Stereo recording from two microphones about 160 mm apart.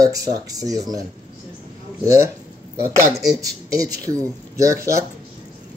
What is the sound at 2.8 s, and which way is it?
Speech, 20° right (ahead or behind).